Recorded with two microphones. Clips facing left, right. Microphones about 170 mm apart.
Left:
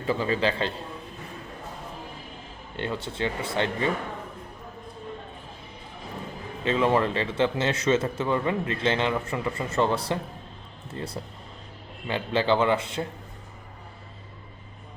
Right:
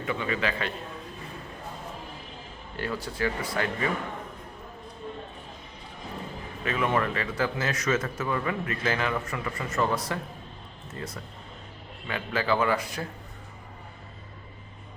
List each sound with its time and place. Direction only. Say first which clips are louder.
0.0 s a man's voice: left 4 dB; 30° left (ahead or behind)
2.7 s a man's voice: left 1 dB; 25° left (ahead or behind)
6.7 s a man's voice: left 4 dB; 30° left (ahead or behind)